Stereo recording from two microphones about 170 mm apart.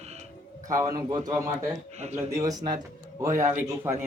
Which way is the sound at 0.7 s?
20° right (ahead or behind).